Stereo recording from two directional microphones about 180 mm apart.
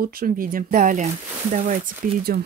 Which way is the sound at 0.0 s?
50° right (ahead or behind).